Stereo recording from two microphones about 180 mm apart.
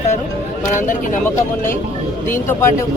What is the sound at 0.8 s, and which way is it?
Speech, 45° left (ahead or behind).